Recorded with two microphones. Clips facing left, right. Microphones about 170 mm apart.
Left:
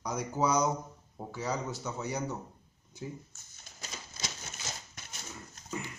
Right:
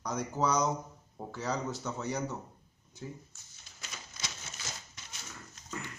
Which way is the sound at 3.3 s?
45° left (ahead or behind).